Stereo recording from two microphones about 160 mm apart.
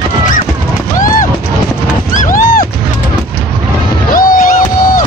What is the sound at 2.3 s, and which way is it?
Music, 60° left (ahead or behind).